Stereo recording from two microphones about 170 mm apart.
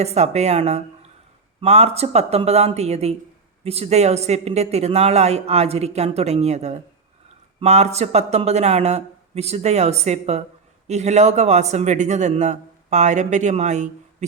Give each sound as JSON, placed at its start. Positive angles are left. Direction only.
{"t": 0.0, "sound": "a man's voice", "side_deg": -40}